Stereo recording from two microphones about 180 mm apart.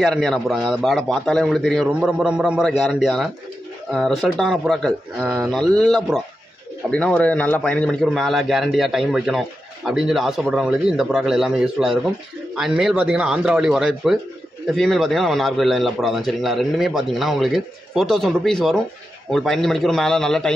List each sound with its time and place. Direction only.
0.0 s a man's voice: centre (ahead or behind)
5.2 s speech: 10° right (ahead or behind)
5.5 s a man's voice: centre (ahead or behind)